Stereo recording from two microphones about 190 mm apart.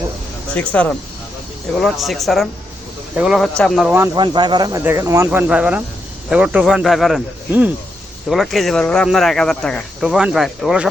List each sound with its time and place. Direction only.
0.5 s speech: 5° left (ahead or behind)
3.9 s speech: 15° right (ahead or behind)